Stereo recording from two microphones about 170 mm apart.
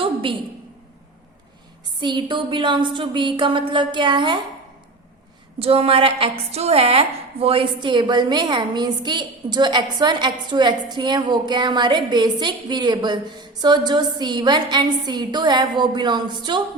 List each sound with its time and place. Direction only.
0.0 s a sound: 30° right (ahead or behind)
2.0 s a woman's voice: 25° right (ahead or behind)
5.5 s a woman's voice: 35° right (ahead or behind)